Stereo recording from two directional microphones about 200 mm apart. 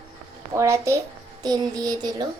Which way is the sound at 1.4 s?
20° right (ahead or behind).